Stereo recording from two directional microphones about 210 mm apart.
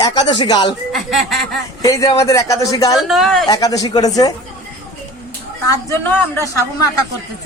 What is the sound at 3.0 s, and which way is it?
Speech, centre (ahead or behind).